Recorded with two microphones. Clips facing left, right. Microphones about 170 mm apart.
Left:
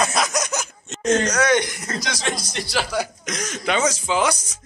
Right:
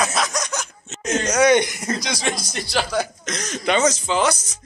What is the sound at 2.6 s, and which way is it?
Speech, 5° left (ahead or behind).